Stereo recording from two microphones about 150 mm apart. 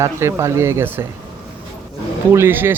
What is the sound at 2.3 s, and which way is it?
Speech, 15° right (ahead or behind).